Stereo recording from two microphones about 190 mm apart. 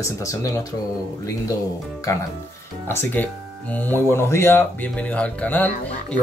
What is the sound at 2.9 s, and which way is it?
Speech, 10° left (ahead or behind).